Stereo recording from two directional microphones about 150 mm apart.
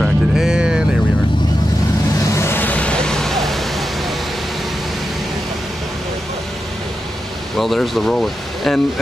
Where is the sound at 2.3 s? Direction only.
15° left (ahead or behind).